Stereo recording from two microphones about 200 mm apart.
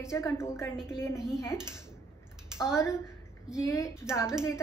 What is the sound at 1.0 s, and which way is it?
Speech, 15° left (ahead or behind).